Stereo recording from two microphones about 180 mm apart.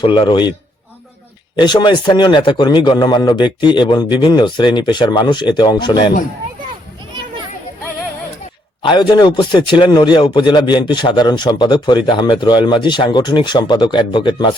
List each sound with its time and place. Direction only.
0.0 s a man's voice: 30° left (ahead or behind)
1.5 s a man's voice: 25° left (ahead or behind)
8.8 s a man's voice: 25° left (ahead or behind)